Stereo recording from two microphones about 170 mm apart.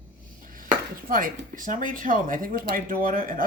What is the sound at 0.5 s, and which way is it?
A man's voice, 55° right (ahead or behind).